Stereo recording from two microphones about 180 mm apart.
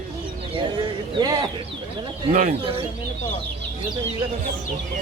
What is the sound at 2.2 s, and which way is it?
Speech, 45° right (ahead or behind).